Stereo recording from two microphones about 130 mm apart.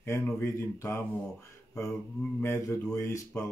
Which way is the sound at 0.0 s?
20° left (ahead or behind).